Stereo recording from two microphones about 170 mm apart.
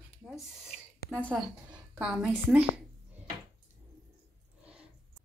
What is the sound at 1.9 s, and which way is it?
Speech, 5° right (ahead or behind).